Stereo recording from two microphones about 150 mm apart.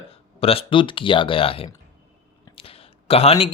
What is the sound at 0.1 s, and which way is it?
Speech, 40° left (ahead or behind).